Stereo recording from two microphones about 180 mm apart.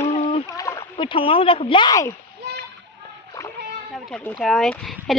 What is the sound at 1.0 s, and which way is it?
Speech, 30° left (ahead or behind).